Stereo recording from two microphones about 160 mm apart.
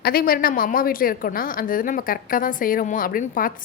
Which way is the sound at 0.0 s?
70° left (ahead or behind).